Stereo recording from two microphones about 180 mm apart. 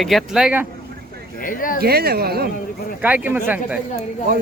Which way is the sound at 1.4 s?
50° left (ahead or behind).